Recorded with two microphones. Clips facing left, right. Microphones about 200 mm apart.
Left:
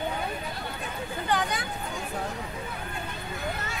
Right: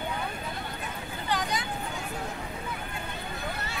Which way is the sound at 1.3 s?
55° left (ahead or behind).